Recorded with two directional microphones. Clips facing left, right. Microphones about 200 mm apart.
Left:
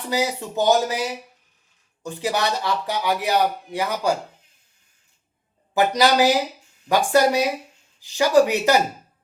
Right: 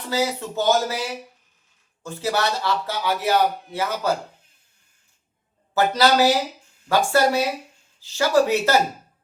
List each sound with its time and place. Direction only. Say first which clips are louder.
0.1 s speech: even; 15° left (ahead or behind)
5.7 s speech: even; 15° left (ahead or behind)